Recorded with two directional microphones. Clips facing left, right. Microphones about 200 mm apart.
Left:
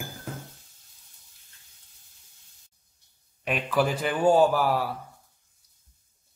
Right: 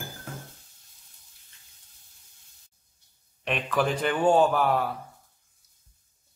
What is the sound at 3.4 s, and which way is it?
A man's voice, 5° left (ahead or behind).